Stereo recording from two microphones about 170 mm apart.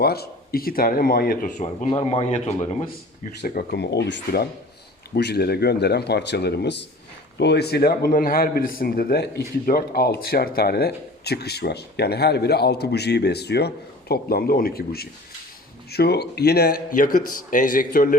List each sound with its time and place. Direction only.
0.0 s a man's voice: 65° left (ahead or behind); by 1.9 s 45° left (ahead or behind)
1.9 s speech: 30° left (ahead or behind)
3.4 s a man's voice: 60° left (ahead or behind)
9.6 s speech: 60° left (ahead or behind)